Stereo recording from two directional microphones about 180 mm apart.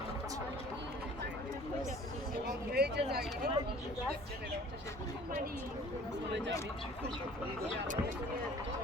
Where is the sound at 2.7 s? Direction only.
60° right (ahead or behind).